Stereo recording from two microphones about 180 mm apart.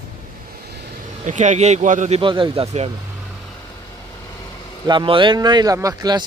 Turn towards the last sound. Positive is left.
turn(degrees=-20)  # may be behind; listen again after turning